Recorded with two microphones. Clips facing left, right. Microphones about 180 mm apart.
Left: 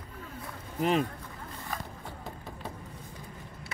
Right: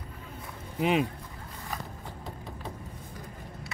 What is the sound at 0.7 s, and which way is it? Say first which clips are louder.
Speech: right 1 dB; 5° right (ahead or behind).